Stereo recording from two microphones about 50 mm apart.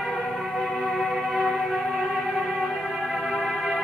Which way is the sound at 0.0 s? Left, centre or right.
Centre.